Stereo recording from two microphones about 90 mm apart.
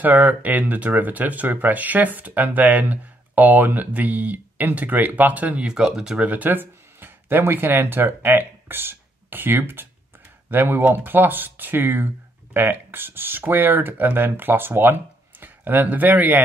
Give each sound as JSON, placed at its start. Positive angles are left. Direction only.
{"t": 0.0, "sound": "speech", "side_deg": -20}